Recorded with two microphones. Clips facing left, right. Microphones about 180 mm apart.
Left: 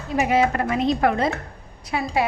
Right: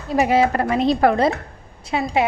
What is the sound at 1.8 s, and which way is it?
Speech, 25° right (ahead or behind).